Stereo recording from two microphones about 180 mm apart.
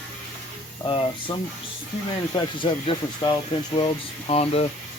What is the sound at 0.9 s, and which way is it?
Speech, 30° left (ahead or behind).